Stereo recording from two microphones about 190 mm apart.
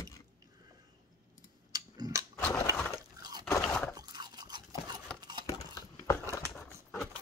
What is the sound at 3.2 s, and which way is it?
Crunch, 20° right (ahead or behind).